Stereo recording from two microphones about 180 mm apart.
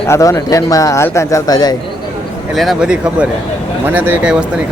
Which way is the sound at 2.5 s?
5° right (ahead or behind).